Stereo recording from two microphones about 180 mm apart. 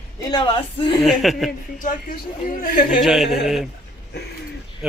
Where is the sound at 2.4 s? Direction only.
50° left (ahead or behind).